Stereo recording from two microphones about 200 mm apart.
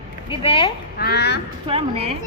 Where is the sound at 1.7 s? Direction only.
30° right (ahead or behind).